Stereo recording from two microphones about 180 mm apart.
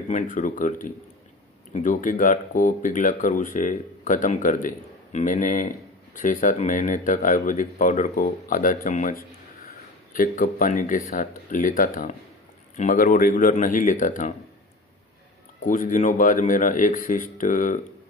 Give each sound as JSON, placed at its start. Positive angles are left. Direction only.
{"t": 0.1, "sound": "speech", "side_deg": 45}
{"t": 15.6, "sound": "speech", "side_deg": 50}